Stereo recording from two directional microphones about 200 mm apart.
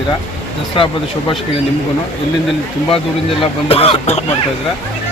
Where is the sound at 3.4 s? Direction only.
30° left (ahead or behind).